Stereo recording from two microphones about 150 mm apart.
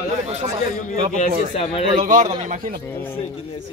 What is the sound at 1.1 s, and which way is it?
Speech, 45° left (ahead or behind).